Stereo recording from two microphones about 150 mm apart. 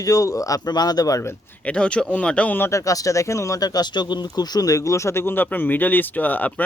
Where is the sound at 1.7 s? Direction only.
5° left (ahead or behind).